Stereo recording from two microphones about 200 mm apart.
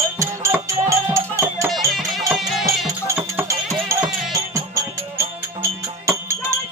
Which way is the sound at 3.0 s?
15° right (ahead or behind).